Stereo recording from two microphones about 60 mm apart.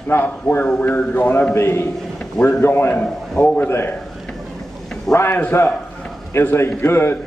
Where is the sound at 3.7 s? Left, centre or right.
Left.